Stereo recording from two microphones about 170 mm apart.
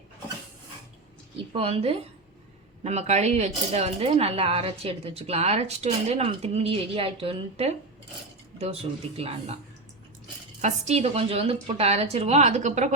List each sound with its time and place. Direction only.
1.5 s speech: 35° right (ahead or behind)
9.1 s speech: 35° right (ahead or behind)
10.6 s speech: 40° right (ahead or behind)